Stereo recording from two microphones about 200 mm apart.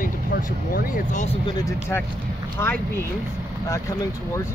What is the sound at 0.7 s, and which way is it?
Speech, 45° left (ahead or behind).